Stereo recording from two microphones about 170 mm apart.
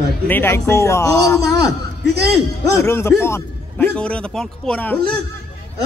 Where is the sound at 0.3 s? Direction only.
15° left (ahead or behind).